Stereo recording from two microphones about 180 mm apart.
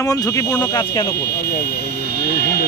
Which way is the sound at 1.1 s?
65° left (ahead or behind).